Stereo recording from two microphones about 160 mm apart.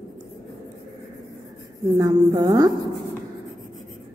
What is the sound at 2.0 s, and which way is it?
Speech, 25° right (ahead or behind).